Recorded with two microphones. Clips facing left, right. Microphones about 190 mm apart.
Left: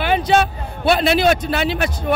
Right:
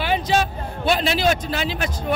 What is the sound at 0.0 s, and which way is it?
Music, 60° left (ahead or behind).